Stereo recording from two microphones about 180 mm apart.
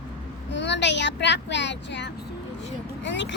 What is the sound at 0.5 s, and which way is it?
Speech, 75° left (ahead or behind).